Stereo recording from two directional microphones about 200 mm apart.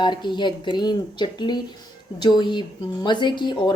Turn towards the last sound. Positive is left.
turn(degrees=20)  # may be behind; listen again after turning